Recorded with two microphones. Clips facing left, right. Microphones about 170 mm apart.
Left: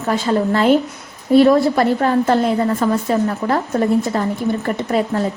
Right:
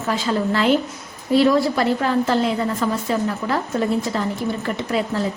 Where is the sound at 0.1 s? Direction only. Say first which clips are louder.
Left 4 dB; 45° left (ahead or behind).